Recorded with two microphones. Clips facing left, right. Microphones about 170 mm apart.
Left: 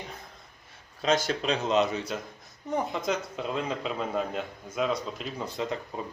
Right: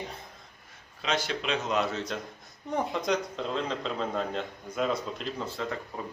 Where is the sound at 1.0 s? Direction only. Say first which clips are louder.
Left 4 dB; 45° left (ahead or behind).